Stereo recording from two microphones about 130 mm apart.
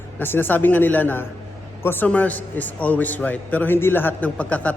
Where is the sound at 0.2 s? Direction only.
15° left (ahead or behind).